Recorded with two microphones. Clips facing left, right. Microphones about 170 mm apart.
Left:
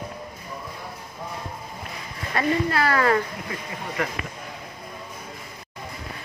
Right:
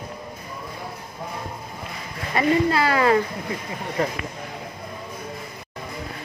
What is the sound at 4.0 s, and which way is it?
Speech, 35° right (ahead or behind).